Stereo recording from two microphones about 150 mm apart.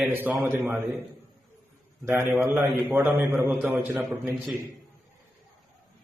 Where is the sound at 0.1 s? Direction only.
15° right (ahead or behind).